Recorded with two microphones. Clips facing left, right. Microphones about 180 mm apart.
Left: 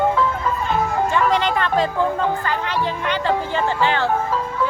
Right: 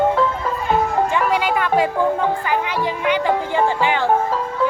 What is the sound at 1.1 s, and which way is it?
Music, 10° right (ahead or behind).